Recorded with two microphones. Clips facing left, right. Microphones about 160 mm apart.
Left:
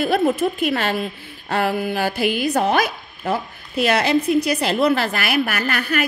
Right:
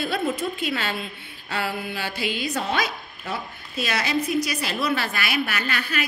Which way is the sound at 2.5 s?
60° left (ahead or behind).